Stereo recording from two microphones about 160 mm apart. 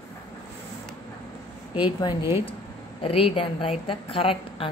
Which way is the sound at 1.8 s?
30° left (ahead or behind).